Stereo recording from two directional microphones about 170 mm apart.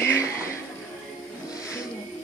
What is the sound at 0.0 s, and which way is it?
Music, 15° left (ahead or behind).